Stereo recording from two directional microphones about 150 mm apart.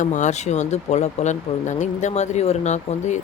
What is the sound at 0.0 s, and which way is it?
Speech, 55° left (ahead or behind).